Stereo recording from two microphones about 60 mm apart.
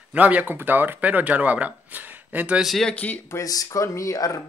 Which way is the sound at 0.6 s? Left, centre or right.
Right.